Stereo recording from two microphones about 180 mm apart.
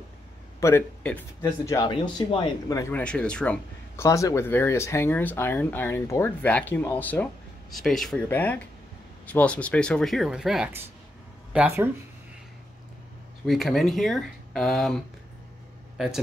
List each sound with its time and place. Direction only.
0.6 s a man's voice: 15° left (ahead or behind)
1.9 s speech: 30° left (ahead or behind)
2.8 s speech: 10° left (ahead or behind); by 11.9 s 10° right (ahead or behind)
13.5 s speech: centre (ahead or behind)
16.0 s speech: centre (ahead or behind)